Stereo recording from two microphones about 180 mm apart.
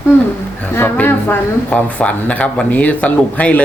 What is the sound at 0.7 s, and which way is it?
Speech, 10° left (ahead or behind).